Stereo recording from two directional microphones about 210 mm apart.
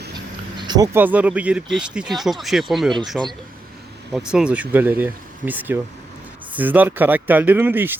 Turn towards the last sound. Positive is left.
turn(degrees=-10)  # may be behind; listen again after turning